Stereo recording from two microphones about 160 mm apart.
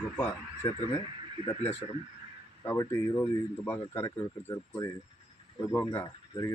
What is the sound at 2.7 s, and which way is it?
Speech, 15° left (ahead or behind).